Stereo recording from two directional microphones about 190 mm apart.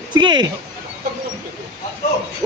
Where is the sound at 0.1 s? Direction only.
25° right (ahead or behind).